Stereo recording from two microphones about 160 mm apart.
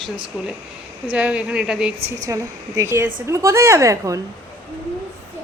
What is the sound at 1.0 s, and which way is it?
Speech, 10° right (ahead or behind).